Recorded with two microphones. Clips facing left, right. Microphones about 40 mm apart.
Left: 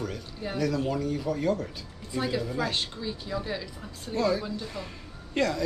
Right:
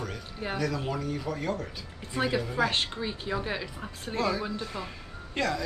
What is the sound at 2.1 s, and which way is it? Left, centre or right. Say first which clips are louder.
Speech: right 1 dB; centre.